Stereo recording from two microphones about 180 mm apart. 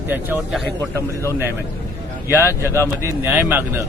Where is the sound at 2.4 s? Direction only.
15° left (ahead or behind).